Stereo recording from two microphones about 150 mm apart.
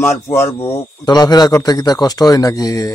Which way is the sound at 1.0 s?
30° left (ahead or behind).